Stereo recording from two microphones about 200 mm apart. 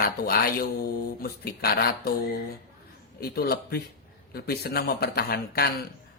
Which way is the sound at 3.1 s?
50° left (ahead or behind).